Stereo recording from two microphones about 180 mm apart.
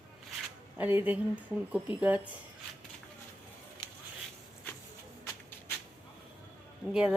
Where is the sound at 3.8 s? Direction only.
25° left (ahead or behind).